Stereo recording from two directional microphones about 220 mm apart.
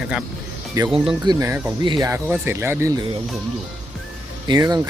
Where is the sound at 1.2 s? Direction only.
15° right (ahead or behind).